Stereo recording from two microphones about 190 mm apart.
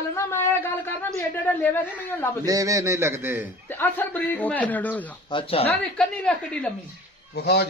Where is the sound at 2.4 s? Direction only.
20° right (ahead or behind).